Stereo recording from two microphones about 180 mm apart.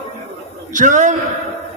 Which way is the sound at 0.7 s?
45° right (ahead or behind).